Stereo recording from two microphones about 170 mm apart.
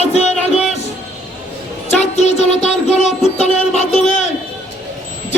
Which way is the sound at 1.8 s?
40° left (ahead or behind).